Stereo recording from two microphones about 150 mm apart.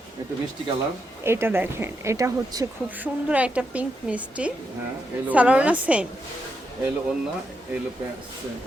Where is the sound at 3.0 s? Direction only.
10° right (ahead or behind).